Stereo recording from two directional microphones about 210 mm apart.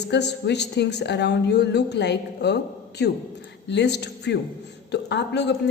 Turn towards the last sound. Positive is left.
turn(degrees=55)  # may be behind; listen again after turning